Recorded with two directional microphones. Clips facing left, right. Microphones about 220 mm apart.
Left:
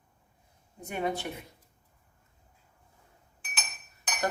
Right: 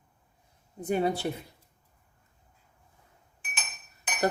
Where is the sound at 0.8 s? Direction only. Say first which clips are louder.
Right 5 dB; 35° right (ahead or behind).